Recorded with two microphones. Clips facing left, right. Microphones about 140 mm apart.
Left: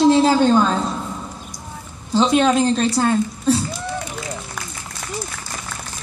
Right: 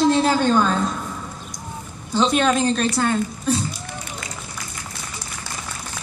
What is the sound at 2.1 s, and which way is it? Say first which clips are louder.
Speech: left 3 dB; 20° left (ahead or behind).